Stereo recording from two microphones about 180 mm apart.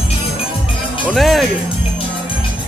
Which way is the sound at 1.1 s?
Centre (ahead or behind).